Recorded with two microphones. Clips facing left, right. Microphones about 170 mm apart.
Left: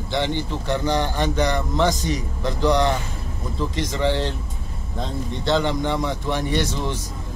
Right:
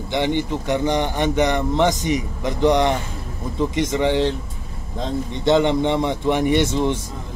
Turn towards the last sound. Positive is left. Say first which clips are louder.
# right 6 dB
turn(degrees=-20)  # may be behind; listen again after turning